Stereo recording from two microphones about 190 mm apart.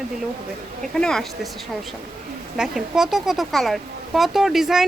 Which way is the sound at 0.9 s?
5° left (ahead or behind).